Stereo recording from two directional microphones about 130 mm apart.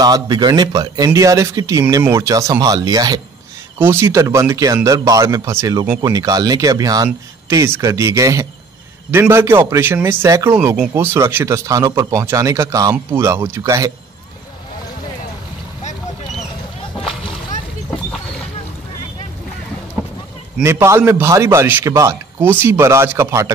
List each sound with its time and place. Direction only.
0.0 s speech: 30° right (ahead or behind)
3.8 s a man's voice: 20° right (ahead or behind)
20.6 s speech: 20° right (ahead or behind)